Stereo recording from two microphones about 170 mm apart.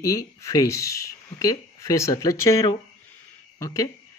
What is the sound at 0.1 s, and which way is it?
Speech, 20° left (ahead or behind).